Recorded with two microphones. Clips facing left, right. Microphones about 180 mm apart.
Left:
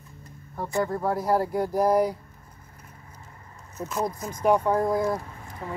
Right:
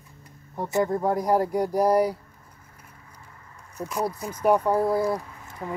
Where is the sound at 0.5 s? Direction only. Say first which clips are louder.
Right 3 dB; 20° right (ahead or behind).